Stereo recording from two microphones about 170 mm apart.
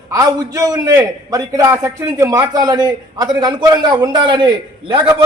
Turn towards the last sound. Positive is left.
turn(degrees=-25)  # may be behind; listen again after turning